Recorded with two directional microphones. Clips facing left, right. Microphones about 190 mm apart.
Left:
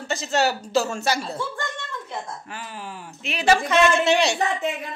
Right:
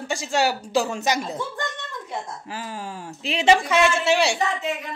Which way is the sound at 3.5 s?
10° right (ahead or behind).